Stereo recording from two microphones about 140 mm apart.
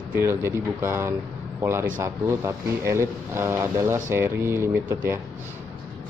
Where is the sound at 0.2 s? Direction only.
20° right (ahead or behind).